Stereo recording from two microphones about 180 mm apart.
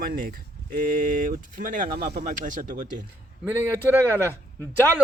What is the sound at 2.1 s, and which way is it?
Speech, 40° right (ahead or behind).